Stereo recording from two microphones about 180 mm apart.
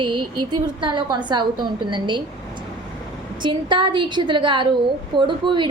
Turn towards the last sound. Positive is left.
turn(degrees=-25)  # may be behind; listen again after turning